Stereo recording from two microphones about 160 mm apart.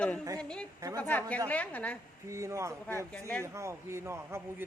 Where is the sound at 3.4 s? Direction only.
20° right (ahead or behind).